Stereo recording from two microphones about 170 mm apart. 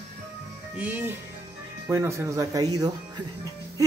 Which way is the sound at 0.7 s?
10° right (ahead or behind).